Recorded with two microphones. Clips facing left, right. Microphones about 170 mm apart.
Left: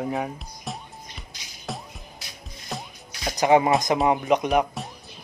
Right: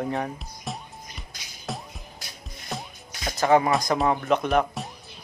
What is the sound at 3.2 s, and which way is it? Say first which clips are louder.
Music: left 1 dB; 20° left (ahead or behind).